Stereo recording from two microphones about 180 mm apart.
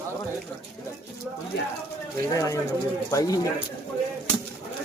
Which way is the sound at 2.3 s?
20° left (ahead or behind).